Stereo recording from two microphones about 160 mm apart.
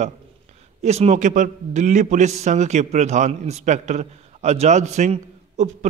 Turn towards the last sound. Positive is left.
turn(degrees=-45)  # may be behind; listen again after turning